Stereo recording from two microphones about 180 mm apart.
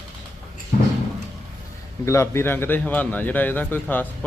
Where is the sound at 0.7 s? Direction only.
45° left (ahead or behind).